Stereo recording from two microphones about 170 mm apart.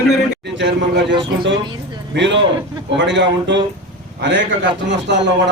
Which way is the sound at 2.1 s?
90° right.